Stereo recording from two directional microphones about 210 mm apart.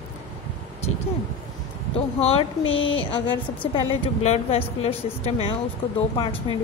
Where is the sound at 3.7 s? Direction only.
30° left (ahead or behind).